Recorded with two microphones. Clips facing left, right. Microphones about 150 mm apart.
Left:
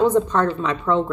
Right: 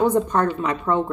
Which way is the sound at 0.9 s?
30° right (ahead or behind).